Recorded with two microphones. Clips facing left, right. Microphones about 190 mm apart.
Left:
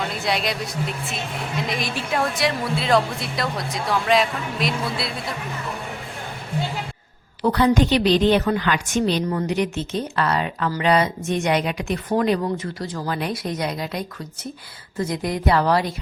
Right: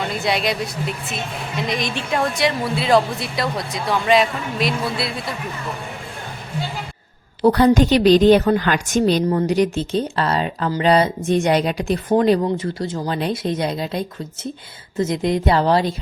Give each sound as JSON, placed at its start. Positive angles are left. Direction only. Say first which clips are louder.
{"t": 0.1, "sound": "a woman's voice", "louder": "right 3 dB", "side_deg": 0}
{"t": 7.4, "sound": "a woman's voice", "louder": "right 4 dB", "side_deg": -40}